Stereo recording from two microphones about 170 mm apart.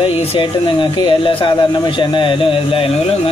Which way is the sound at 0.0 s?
35° left (ahead or behind).